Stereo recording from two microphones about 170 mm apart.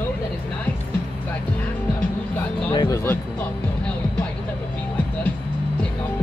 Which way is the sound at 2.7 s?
25° left (ahead or behind).